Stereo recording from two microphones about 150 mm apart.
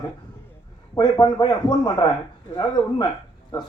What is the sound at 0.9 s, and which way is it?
A man's voice, 25° left (ahead or behind).